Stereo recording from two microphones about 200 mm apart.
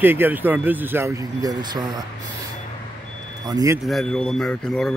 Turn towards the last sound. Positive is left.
turn(degrees=5)  # may be behind; listen again after turning